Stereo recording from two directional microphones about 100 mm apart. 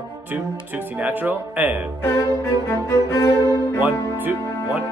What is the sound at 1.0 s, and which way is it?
Speech, 20° right (ahead or behind).